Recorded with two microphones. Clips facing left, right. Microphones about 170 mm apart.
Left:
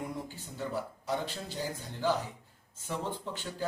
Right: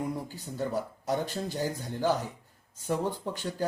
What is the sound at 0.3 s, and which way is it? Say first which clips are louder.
Speech: right 5 dB; 40° right (ahead or behind).